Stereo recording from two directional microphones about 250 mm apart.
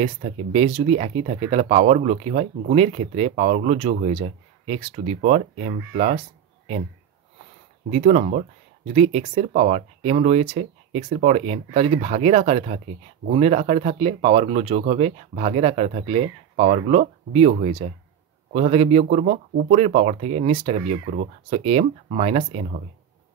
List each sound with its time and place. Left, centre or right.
0.0 s speech: right
7.9 s speech: right